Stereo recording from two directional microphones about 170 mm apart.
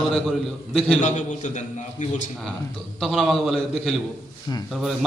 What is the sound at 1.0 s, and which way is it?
A man's voice, 45° left (ahead or behind).